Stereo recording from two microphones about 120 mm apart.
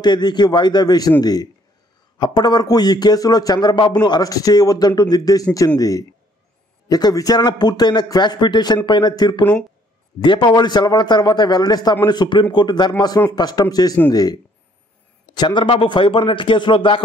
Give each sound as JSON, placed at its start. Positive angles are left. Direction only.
{"t": 0.0, "sound": "a man's voice", "side_deg": 35}